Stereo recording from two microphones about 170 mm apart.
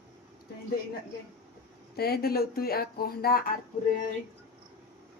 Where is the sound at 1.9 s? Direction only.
65° left (ahead or behind).